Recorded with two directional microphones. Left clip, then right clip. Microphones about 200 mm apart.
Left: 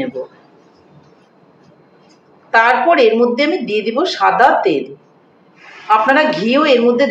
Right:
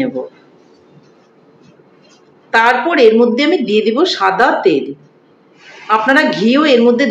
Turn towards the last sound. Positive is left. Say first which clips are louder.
# right 1 dB
turn(degrees=-20)  # may be behind; listen again after turning